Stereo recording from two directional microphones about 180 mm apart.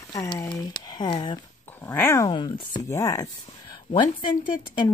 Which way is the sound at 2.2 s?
25° left (ahead or behind).